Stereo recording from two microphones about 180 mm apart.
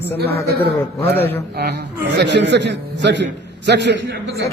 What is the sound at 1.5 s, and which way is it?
A man's voice, 65° right (ahead or behind).